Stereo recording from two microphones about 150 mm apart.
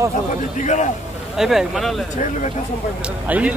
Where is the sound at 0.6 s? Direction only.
50° left (ahead or behind).